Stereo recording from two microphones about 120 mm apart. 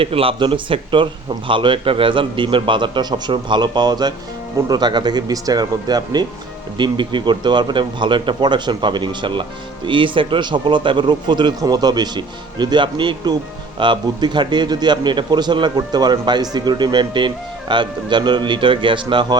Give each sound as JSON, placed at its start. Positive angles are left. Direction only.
{"t": 0.0, "sound": "a man's voice", "side_deg": -50}